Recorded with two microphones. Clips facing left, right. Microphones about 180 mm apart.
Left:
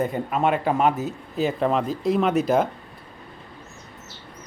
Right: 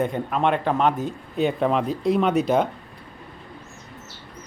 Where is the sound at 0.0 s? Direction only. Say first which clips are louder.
Even; 5° left (ahead or behind).